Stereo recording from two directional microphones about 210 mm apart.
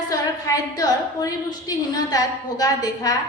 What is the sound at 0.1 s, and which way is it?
A woman's voice, 15° left (ahead or behind).